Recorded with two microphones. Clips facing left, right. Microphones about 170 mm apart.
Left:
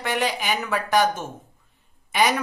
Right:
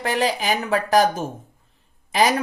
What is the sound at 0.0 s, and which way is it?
Speech, 35° right (ahead or behind).